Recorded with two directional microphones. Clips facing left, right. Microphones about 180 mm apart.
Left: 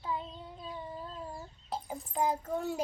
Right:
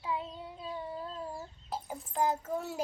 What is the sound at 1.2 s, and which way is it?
Chicken, 5° right (ahead or behind).